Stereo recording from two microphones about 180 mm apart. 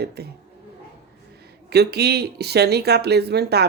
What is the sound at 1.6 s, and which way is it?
Speech, 65° right (ahead or behind).